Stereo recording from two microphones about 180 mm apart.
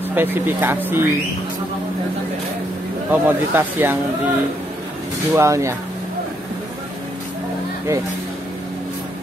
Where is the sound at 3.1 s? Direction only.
10° right (ahead or behind).